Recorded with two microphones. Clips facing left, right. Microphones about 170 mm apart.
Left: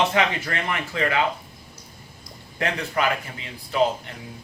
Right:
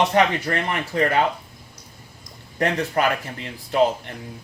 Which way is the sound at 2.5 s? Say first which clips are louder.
Right 4 dB; 45° right (ahead or behind).